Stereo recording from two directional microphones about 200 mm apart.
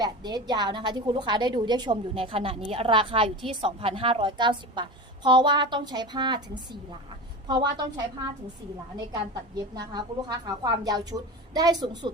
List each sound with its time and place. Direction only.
0.0 s a woman's voice: 20° right (ahead or behind)
7.4 s a woman's voice: 20° right (ahead or behind)